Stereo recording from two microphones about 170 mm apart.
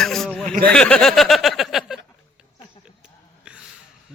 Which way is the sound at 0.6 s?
5° left (ahead or behind).